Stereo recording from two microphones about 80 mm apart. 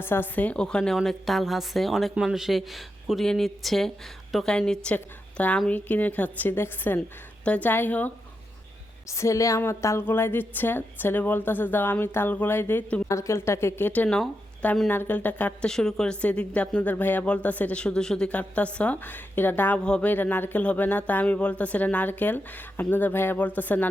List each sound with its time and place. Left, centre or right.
0.0 s a man's voice: left
9.0 s speech: left
13.1 s speech: left
15.6 s a man's voice: centre